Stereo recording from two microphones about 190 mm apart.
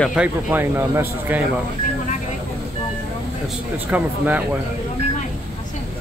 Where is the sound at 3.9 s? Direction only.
10° right (ahead or behind).